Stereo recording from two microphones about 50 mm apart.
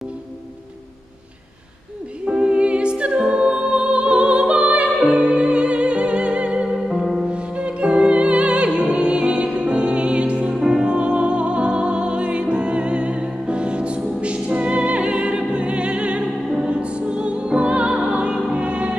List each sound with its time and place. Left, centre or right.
2.2 s music: right
6.9 s music: centre
7.2 s music: right